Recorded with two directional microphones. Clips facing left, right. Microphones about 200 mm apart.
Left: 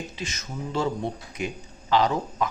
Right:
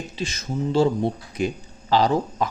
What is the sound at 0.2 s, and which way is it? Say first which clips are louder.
Speech: right 7 dB; 30° right (ahead or behind).